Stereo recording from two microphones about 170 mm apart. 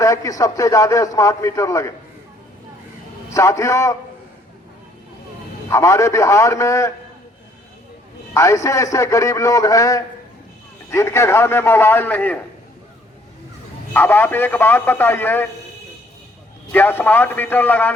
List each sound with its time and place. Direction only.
0.0 s a man's voice: 20° left (ahead or behind)
3.2 s a man's voice: 20° left (ahead or behind)
5.7 s a man's voice: 15° left (ahead or behind)
8.3 s a man's voice: 20° left (ahead or behind)
13.9 s a man's voice: 10° left (ahead or behind)
16.7 s a man's voice: 10° left (ahead or behind)